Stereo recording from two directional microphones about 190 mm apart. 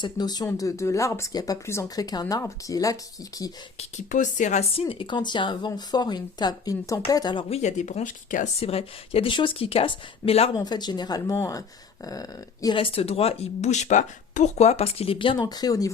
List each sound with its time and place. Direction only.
0.0 s speech: 20° left (ahead or behind)
3.8 s speech: 40° left (ahead or behind); by 7.6 s 25° left (ahead or behind)
7.6 s speech: 40° left (ahead or behind); by 15.9 s 20° left (ahead or behind)